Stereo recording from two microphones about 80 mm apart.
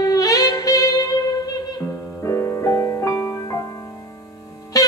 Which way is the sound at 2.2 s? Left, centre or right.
Left.